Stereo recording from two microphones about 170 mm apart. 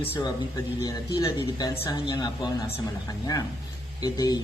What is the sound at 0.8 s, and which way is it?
A man's voice, 20° left (ahead or behind).